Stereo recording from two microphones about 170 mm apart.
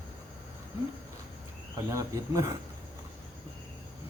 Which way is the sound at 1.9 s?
20° right (ahead or behind).